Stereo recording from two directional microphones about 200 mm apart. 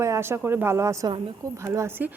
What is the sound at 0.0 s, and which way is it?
A woman's voice, 15° right (ahead or behind).